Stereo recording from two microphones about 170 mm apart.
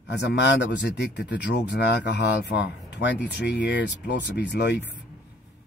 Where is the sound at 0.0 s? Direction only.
90° left.